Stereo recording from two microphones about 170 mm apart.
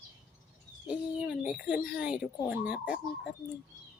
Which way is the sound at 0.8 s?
5° right (ahead or behind).